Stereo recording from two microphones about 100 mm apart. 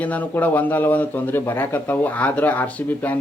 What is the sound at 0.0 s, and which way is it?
Speech, 15° left (ahead or behind).